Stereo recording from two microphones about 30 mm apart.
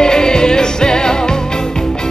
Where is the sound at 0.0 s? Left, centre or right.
Left.